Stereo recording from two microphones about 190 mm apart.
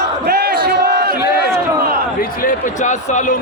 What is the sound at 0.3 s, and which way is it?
Crowd, 55° right (ahead or behind).